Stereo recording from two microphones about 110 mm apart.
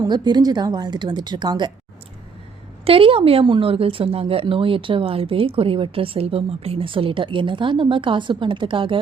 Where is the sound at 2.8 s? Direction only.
60° right (ahead or behind).